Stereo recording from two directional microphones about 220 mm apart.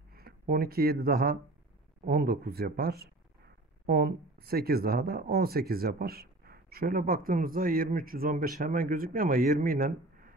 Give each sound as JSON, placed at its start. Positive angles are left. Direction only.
{"t": 0.1, "sound": "speech", "side_deg": -45}